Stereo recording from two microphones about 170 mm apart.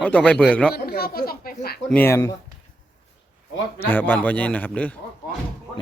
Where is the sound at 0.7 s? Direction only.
65° left (ahead or behind).